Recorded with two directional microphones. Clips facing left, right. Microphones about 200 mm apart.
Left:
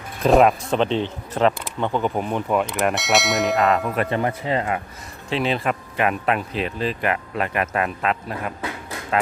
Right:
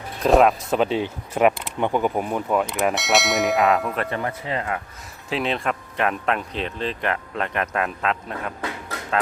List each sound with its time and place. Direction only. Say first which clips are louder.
0.2 s speech: left 1 dB; centre (ahead or behind)
4.1 s speech: left 4 dB; 25° left (ahead or behind)
5.3 s speech: left 2 dB; centre (ahead or behind)